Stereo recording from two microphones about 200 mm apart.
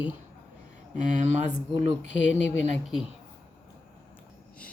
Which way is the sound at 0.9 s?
35° right (ahead or behind).